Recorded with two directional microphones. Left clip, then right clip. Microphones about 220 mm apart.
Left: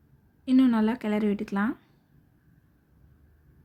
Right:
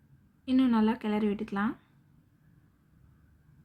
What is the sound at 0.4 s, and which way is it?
Speech, 25° left (ahead or behind).